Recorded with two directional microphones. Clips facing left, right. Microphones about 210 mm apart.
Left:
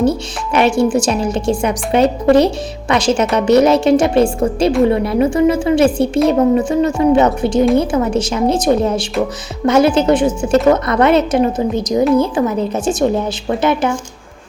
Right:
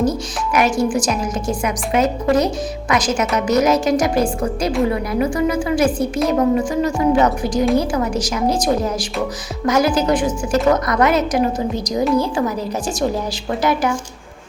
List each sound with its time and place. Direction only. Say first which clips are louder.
0.0 s speech: left 3 dB; 30° left (ahead or behind)